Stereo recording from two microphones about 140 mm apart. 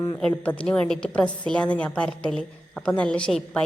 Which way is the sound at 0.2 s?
10° left (ahead or behind).